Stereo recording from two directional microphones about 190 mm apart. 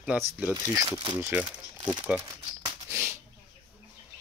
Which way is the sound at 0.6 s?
20° right (ahead or behind).